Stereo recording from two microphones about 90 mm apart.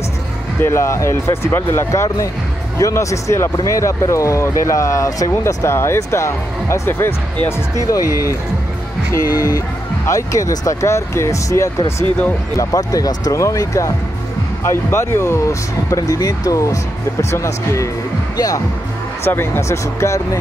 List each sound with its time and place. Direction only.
0.6 s speech: 30° left (ahead or behind)
7.8 s speech: 40° left (ahead or behind)
19.2 s speech: 25° left (ahead or behind)